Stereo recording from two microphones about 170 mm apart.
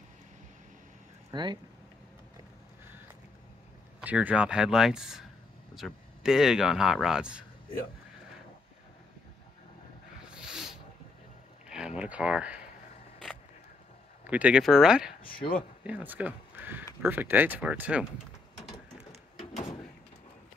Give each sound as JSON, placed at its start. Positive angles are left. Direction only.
{"t": 1.3, "sound": "speech", "side_deg": -25}
{"t": 4.0, "sound": "speech", "side_deg": -10}
{"t": 10.3, "sound": "wild animals", "side_deg": -5}
{"t": 11.7, "sound": "speech", "side_deg": -5}
{"t": 14.2, "sound": "speech", "side_deg": -10}